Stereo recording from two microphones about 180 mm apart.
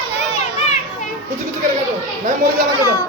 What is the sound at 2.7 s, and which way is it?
Speech, 15° right (ahead or behind).